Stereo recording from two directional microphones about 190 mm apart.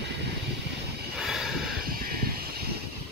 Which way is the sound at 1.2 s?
Centre (ahead or behind).